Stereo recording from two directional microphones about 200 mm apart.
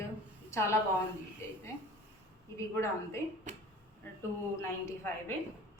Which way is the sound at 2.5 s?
15° left (ahead or behind).